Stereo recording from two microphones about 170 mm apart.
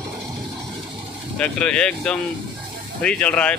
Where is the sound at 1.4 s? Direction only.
5° left (ahead or behind).